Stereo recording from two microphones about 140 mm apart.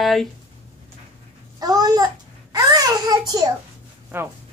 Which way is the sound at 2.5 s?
25° right (ahead or behind).